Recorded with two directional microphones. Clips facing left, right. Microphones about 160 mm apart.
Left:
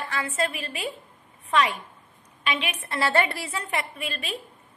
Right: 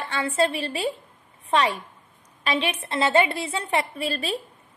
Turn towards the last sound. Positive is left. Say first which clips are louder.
# right 6 dB
turn(degrees=-35)  # may be behind; listen again after turning